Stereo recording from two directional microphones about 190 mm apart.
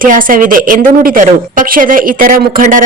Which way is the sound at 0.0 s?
45° right (ahead or behind).